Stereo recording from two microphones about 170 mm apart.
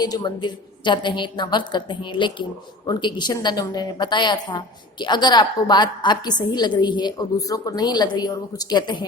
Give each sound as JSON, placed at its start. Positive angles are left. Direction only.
{"t": 0.0, "sound": "a woman's voice", "side_deg": 25}